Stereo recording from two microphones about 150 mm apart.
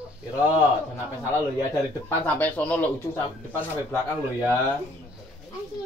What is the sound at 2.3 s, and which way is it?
Speech, 10° left (ahead or behind).